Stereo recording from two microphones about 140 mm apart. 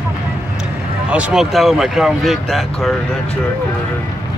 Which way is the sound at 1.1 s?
5° right (ahead or behind).